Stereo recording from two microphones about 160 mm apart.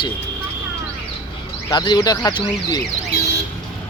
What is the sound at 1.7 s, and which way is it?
Speech, 25° left (ahead or behind).